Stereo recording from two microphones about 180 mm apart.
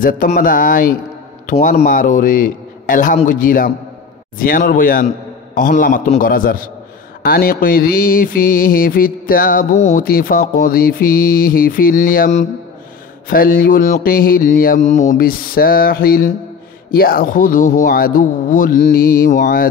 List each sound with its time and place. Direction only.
0.0 s mantra: 50° left (ahead or behind)
1.4 s a man's voice: 45° left (ahead or behind)
3.3 s mantra: 50° left (ahead or behind)
9.8 s speech: 40° left (ahead or behind)
10.0 s mantra: 55° left (ahead or behind)